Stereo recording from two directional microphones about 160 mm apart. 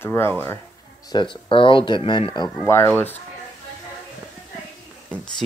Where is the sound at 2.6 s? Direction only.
15° left (ahead or behind).